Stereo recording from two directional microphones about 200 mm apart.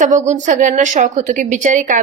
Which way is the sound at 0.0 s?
35° right (ahead or behind).